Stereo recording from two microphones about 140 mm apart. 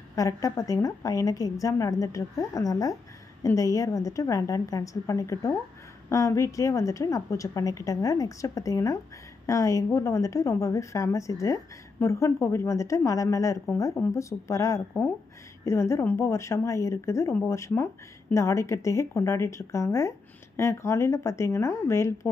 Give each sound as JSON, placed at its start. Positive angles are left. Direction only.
{"t": 0.1, "sound": "a woman's voice", "side_deg": 25}